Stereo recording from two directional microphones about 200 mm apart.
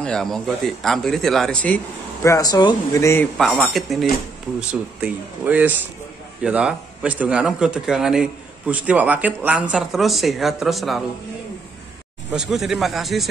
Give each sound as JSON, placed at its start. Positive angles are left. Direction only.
{"t": 0.0, "sound": "a man's voice", "side_deg": 5}
{"t": 2.2, "sound": "speech", "side_deg": 15}
{"t": 3.3, "sound": "a man's voice", "side_deg": 0}
{"t": 12.4, "sound": "a man's voice", "side_deg": 0}